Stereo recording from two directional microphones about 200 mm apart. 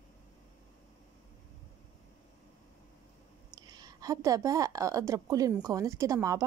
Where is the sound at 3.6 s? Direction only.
20° right (ahead or behind).